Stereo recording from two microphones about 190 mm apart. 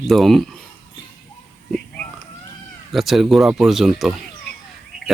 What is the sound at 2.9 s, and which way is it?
Speech, centre (ahead or behind).